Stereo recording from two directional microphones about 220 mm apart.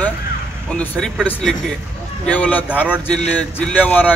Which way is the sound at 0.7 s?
5° left (ahead or behind).